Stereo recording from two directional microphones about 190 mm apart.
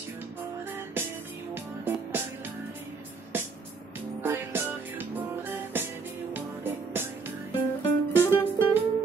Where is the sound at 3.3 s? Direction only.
10° right (ahead or behind).